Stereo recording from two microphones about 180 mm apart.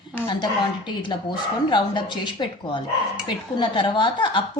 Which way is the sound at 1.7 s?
25° left (ahead or behind).